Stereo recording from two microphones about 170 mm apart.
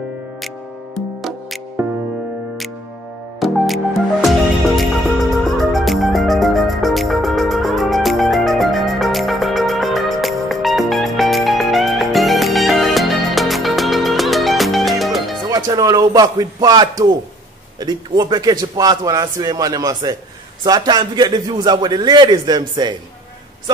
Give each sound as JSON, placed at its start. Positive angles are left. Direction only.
{"t": 3.3, "sound": "music", "side_deg": 0}
{"t": 15.5, "sound": "a man's voice", "side_deg": -20}